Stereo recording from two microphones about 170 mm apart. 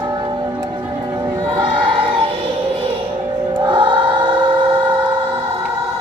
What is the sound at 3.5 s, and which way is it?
Music, 25° right (ahead or behind).